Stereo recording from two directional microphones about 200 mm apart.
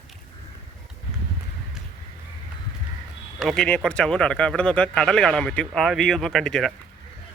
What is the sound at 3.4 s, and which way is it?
Speech, centre (ahead or behind).